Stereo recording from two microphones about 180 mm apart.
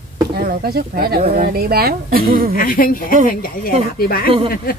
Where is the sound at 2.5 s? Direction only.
50° left (ahead or behind).